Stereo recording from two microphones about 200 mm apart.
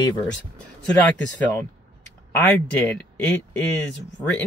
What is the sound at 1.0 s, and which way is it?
Speech, 10° left (ahead or behind).